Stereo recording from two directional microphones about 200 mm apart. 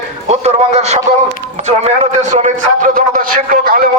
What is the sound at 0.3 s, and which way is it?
Speech, 35° right (ahead or behind).